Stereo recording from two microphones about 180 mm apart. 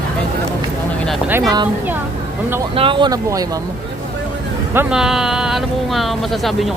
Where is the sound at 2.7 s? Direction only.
30° right (ahead or behind).